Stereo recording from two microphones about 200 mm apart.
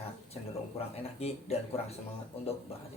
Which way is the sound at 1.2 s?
30° left (ahead or behind).